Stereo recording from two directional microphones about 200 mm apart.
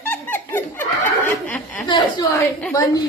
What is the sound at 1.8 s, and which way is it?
A woman's voice, 20° left (ahead or behind).